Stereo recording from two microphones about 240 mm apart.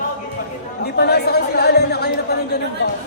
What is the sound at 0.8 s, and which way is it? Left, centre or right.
Speech, left.